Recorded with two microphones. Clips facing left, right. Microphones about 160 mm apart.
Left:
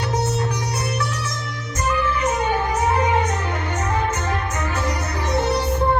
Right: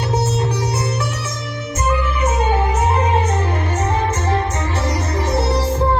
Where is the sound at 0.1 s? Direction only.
25° right (ahead or behind).